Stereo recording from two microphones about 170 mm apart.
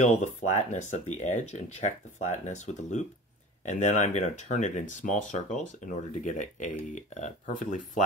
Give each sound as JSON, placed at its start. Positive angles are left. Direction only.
{"t": 0.0, "sound": "speech", "side_deg": 45}